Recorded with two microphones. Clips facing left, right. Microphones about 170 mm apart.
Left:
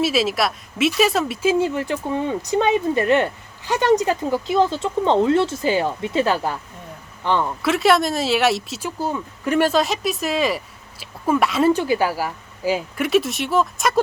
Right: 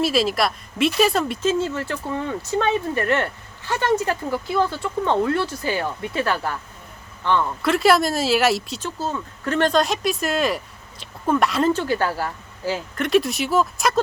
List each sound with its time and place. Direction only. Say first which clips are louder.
0.0 s speech: even; centre (ahead or behind); by 7.5 s 15° left (ahead or behind)
7.6 s speech: even; centre (ahead or behind)
8.8 s speech: left 2 dB; 15° left (ahead or behind)
11.7 s speech: left 3 dB; 15° left (ahead or behind)
13.1 s speech: right 1 dB; centre (ahead or behind)